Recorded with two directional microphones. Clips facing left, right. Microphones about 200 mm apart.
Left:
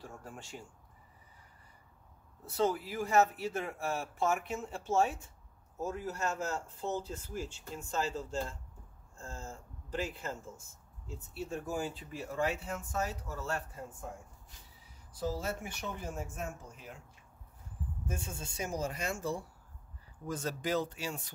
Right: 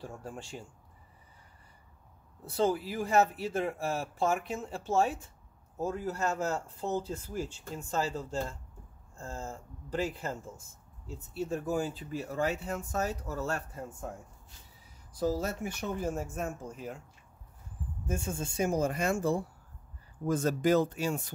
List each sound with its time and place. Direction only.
0.0 s speech: 30° right (ahead or behind)
2.5 s speech: 35° right (ahead or behind)
15.1 s speech: 40° right (ahead or behind)
18.0 s speech: 50° right (ahead or behind)